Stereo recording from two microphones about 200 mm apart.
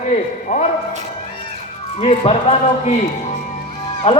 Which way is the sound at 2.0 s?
30° left (ahead or behind).